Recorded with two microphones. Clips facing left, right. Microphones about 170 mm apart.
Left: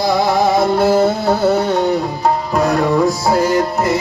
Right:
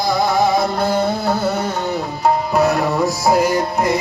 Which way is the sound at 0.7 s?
5° left (ahead or behind).